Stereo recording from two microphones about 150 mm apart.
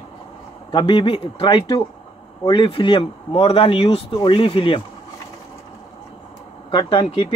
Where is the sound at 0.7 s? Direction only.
35° left (ahead or behind).